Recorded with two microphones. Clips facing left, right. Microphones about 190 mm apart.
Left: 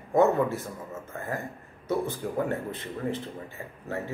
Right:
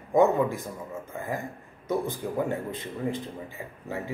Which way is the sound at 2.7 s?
15° right (ahead or behind).